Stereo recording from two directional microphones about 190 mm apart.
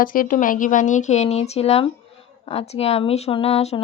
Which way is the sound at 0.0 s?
45° left (ahead or behind).